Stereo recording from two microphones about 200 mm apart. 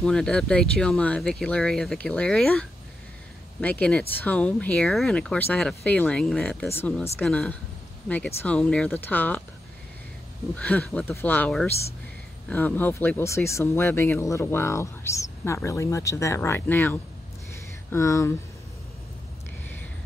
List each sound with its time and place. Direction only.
0.0 s speech: 5° left (ahead or behind)
3.6 s speech: 5° left (ahead or behind)
10.5 s speech: 5° left (ahead or behind)